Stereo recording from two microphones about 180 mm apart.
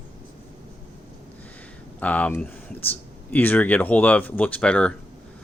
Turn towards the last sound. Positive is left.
turn(degrees=5)  # may be behind; listen again after turning